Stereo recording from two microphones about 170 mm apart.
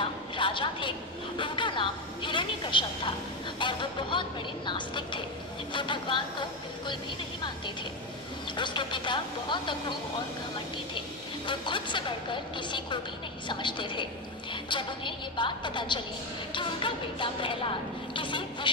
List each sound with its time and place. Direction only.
0.0 s a sound: 30° left (ahead or behind)
1.4 s a woman's voice: 30° left (ahead or behind)
8.5 s a woman's voice: 25° left (ahead or behind)
11.4 s a woman's voice: 30° left (ahead or behind)